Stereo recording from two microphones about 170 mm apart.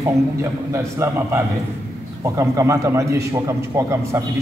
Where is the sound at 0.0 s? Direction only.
15° right (ahead or behind).